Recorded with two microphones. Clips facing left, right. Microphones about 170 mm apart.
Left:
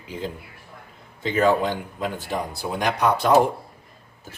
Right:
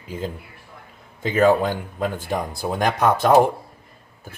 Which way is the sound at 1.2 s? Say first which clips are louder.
Right 3 dB; 50° right (ahead or behind).